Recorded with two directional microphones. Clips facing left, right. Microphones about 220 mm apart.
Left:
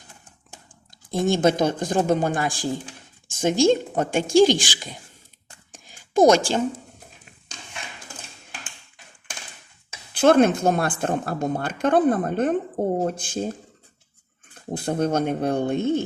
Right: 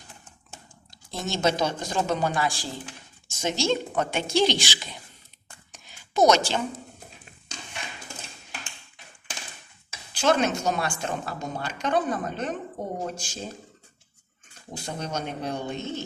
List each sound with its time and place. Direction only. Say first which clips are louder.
1.1 s a woman's voice: left 7 dB; 50° left (ahead or behind)
5.7 s a sound: left 7 dB; 50° left (ahead or behind)
10.2 s a woman's voice: left 7 dB; 55° left (ahead or behind)
14.5 s a woman's voice: left 10 dB; 55° left (ahead or behind)